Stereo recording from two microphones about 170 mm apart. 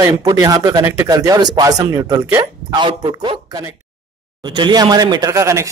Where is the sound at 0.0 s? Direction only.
20° right (ahead or behind).